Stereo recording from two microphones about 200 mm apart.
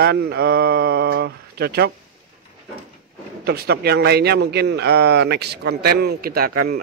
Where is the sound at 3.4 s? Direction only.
55° right (ahead or behind).